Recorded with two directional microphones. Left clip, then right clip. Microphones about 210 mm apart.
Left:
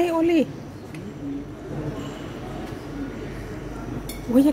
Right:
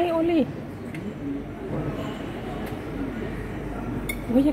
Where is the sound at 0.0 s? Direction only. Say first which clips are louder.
Left 2 dB; 15° left (ahead or behind).